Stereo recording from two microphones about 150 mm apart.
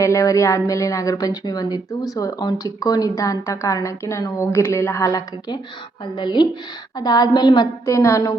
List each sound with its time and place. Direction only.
0.0 s a woman's voice: 20° left (ahead or behind)